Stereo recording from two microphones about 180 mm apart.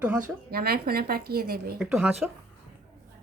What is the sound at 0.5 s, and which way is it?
A woman's voice, 60° right (ahead or behind).